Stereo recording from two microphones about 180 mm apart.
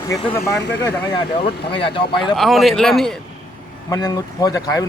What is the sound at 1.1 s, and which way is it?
Speech, 30° left (ahead or behind).